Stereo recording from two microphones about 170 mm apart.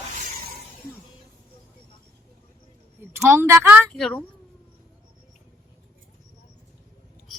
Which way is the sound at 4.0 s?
Centre (ahead or behind).